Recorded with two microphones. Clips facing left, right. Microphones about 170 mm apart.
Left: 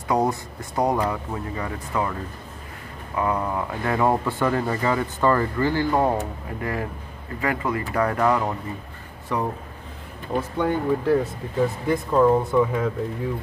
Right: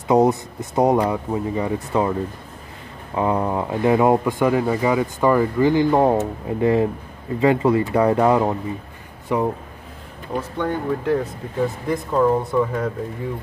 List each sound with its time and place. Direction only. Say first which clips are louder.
0.1 s speech: right 6 dB; 20° right (ahead or behind)
3.2 s speech: right 4 dB; 25° right (ahead or behind)
10.3 s speech: left 1 dB; 5° left (ahead or behind)